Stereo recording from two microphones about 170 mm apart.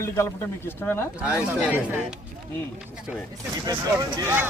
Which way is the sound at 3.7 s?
20° right (ahead or behind).